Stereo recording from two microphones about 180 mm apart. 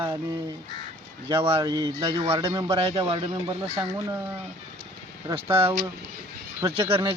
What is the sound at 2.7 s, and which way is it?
A man's voice, 30° right (ahead or behind).